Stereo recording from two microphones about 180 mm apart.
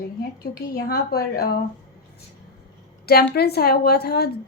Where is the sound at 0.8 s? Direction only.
55° left (ahead or behind).